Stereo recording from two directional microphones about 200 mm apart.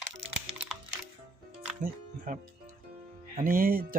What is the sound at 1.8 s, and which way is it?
Speech, 40° right (ahead or behind).